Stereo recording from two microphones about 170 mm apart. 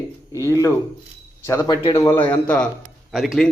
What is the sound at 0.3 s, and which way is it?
A man's voice, 20° left (ahead or behind).